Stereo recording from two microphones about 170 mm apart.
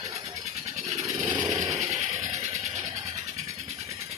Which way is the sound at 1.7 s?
40° right (ahead or behind).